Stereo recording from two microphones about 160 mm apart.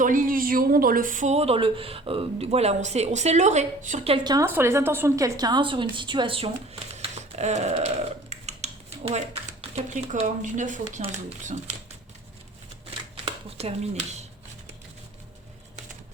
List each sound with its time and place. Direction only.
0.0 s a woman's voice: 55° right (ahead or behind)
4.1 s a woman's voice: 25° right (ahead or behind)
4.4 s a woman's voice: 15° right (ahead or behind); by 6.5 s 35° right (ahead or behind)
7.0 s a sound: 45° right (ahead or behind)
10.9 s a woman's voice: 45° right (ahead or behind)
13.6 s a woman's voice: 40° right (ahead or behind)